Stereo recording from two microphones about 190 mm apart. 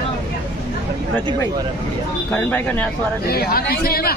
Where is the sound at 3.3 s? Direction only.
55° left (ahead or behind).